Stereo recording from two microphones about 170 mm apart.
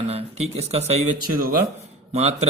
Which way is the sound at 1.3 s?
60° right (ahead or behind).